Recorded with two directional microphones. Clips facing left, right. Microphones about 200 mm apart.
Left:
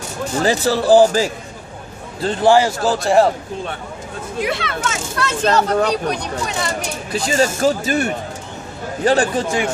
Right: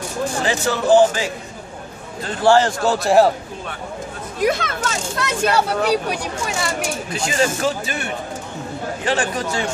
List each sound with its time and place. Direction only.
0.4 s speech: 35° left (ahead or behind)
2.4 s a man's voice: 15° left (ahead or behind)
2.8 s a man's voice: centre (ahead or behind)
4.4 s speech: 45° right (ahead or behind)
5.1 s speech: 15° right (ahead or behind)
7.1 s speech: 35° left (ahead or behind)